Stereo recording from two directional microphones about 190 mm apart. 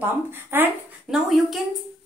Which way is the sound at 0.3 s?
10° right (ahead or behind).